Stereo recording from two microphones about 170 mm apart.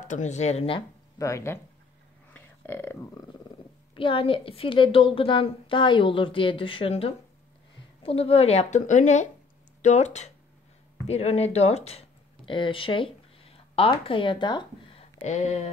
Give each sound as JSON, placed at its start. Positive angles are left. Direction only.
{"t": 0.1, "sound": "speech", "side_deg": 45}
{"t": 1.1, "sound": "speech", "side_deg": 20}
{"t": 2.3, "sound": "a sound", "side_deg": 10}
{"t": 3.9, "sound": "speech", "side_deg": 30}
{"t": 15.2, "sound": "speech", "side_deg": 40}